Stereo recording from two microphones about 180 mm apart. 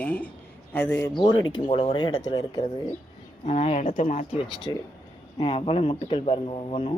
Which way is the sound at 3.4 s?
35° left (ahead or behind).